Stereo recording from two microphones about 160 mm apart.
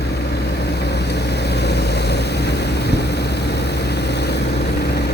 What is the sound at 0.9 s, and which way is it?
Vehicle, 90° left.